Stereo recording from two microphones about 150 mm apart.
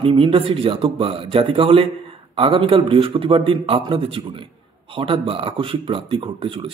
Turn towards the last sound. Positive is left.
turn(degrees=-35)  # may be behind; listen again after turning